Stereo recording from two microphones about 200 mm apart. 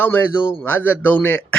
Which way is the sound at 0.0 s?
10° left (ahead or behind).